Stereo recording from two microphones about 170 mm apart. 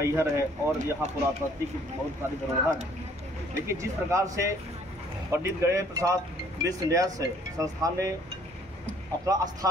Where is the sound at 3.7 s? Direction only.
20° right (ahead or behind).